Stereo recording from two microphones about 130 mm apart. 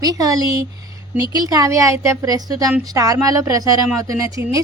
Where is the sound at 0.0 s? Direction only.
25° right (ahead or behind).